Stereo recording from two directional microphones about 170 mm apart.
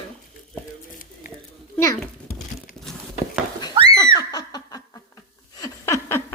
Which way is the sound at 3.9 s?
25° left (ahead or behind).